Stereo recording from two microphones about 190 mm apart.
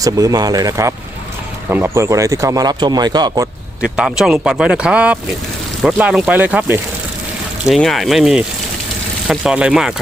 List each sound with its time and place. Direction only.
0.0 s speech: 20° right (ahead or behind)
3.9 s speech: 5° right (ahead or behind)